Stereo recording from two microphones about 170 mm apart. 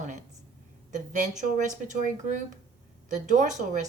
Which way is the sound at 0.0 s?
45° right (ahead or behind).